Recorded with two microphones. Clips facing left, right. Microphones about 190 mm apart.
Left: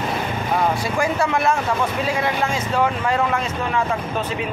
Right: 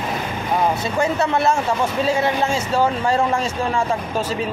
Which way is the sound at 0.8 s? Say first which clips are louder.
Right 1 dB; 25° right (ahead or behind).